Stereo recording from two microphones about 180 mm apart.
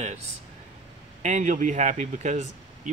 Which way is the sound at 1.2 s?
45° right (ahead or behind).